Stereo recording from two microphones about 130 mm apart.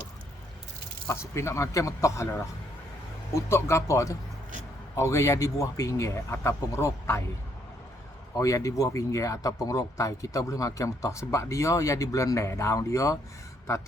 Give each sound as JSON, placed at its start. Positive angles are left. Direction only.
{"t": 1.3, "sound": "speech", "side_deg": 20}
{"t": 8.4, "sound": "speech", "side_deg": 25}